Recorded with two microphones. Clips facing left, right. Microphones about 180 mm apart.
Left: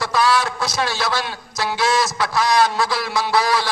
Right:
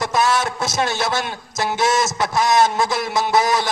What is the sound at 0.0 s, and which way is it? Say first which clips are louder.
A man's voice: even; 20° right (ahead or behind).